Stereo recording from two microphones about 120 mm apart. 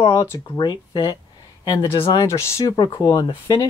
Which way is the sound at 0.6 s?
40° left (ahead or behind).